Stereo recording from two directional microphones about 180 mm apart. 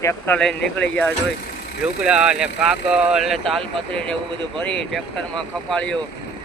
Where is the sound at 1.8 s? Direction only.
5° right (ahead or behind).